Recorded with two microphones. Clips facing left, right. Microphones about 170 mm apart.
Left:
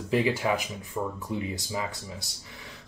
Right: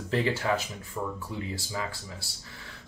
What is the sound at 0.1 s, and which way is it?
Speech, 10° left (ahead or behind).